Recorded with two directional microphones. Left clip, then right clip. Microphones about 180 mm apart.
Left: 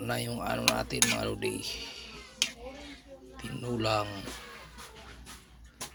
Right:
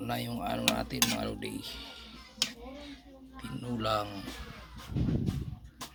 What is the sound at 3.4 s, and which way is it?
Speech, 10° left (ahead or behind).